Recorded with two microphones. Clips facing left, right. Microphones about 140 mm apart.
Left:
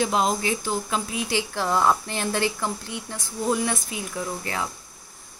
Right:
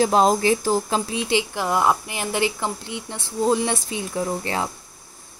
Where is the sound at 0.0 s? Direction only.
40° right (ahead or behind).